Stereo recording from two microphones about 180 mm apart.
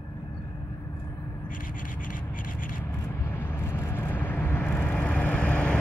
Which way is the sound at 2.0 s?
50° left (ahead or behind).